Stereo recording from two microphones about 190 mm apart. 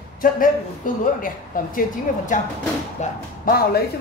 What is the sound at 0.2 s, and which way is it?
A woman's voice, 45° left (ahead or behind).